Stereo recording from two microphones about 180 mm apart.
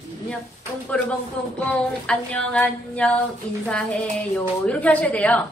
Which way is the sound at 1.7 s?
5° left (ahead or behind).